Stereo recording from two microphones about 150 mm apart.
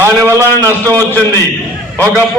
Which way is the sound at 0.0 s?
15° right (ahead or behind).